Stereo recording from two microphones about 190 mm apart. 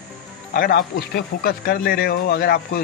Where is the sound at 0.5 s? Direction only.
55° left (ahead or behind).